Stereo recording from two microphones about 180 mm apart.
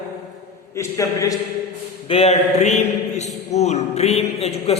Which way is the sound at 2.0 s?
35° left (ahead or behind).